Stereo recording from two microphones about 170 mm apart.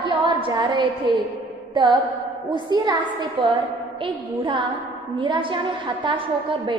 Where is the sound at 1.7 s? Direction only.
25° right (ahead or behind).